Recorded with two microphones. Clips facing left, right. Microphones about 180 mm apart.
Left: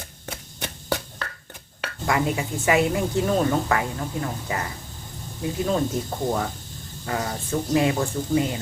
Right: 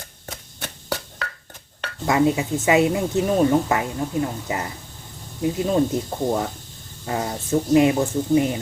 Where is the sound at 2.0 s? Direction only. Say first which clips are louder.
Right 5 dB; 25° right (ahead or behind).